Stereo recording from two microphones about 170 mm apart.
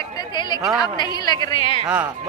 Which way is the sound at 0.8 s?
25° left (ahead or behind).